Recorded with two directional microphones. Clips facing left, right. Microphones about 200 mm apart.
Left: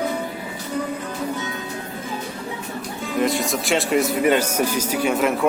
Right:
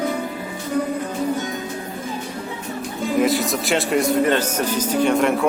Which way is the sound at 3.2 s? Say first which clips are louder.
Right 1 dB; centre (ahead or behind).